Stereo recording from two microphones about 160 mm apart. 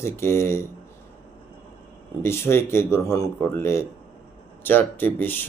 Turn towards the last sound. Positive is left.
turn(degrees=10)  # may be behind; listen again after turning